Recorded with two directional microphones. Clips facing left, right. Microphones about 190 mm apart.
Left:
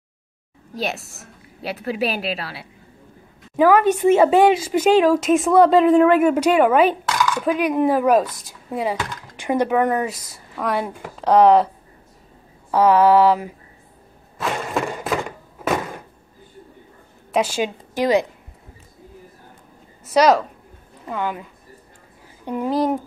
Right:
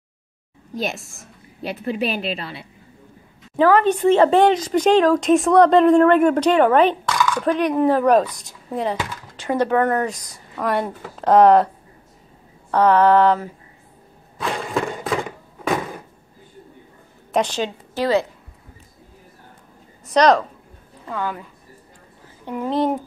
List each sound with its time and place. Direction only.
0.7 s a woman's voice: centre (ahead or behind)
10.2 s a woman's voice: centre (ahead or behind)
12.7 s a woman's voice: 5° left (ahead or behind)
14.4 s a sound: centre (ahead or behind)
17.3 s a woman's voice: 5° left (ahead or behind)
20.1 s speech: 5° left (ahead or behind)
21.1 s a woman's voice: 15° left (ahead or behind)
22.7 s speech: centre (ahead or behind)